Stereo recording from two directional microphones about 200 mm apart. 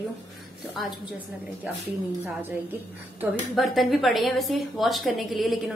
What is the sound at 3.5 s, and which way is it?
A woman's voice, centre (ahead or behind).